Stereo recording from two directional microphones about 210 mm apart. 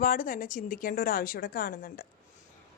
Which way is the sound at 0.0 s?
40° left (ahead or behind).